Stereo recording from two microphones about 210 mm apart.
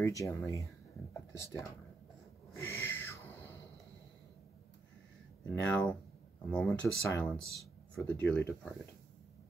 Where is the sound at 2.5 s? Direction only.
15° left (ahead or behind).